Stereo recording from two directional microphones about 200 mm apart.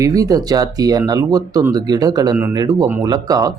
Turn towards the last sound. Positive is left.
turn(degrees=-20)  # may be behind; listen again after turning